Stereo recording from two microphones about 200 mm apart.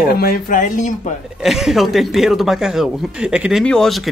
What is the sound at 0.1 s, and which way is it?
Speech, 50° left (ahead or behind).